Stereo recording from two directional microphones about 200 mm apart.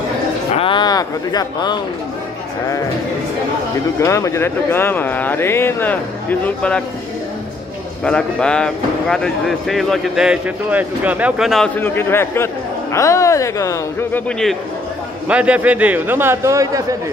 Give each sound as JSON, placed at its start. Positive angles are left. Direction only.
{"t": 0.6, "sound": "speech", "side_deg": 25}
{"t": 4.0, "sound": "speech", "side_deg": 15}
{"t": 8.0, "sound": "speech", "side_deg": 5}
{"t": 15.2, "sound": "a man's voice", "side_deg": -5}